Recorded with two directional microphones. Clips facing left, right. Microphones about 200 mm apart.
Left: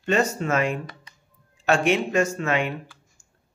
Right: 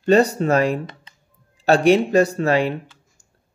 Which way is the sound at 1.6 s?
35° right (ahead or behind).